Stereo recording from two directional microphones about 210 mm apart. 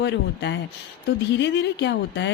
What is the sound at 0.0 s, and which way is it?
Speech, 55° left (ahead or behind).